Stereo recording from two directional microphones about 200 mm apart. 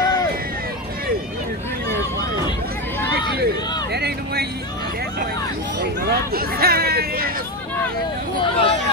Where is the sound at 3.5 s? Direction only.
20° left (ahead or behind).